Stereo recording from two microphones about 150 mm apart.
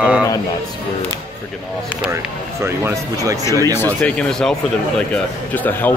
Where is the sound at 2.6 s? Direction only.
20° right (ahead or behind).